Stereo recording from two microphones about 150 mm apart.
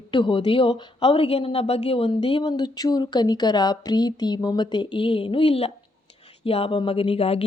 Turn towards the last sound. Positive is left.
turn(degrees=40)  # may be behind; listen again after turning